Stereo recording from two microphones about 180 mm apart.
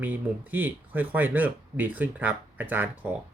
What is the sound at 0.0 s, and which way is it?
Speech, 10° right (ahead or behind).